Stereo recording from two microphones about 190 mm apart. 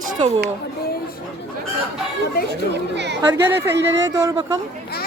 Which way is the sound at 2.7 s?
65° right (ahead or behind).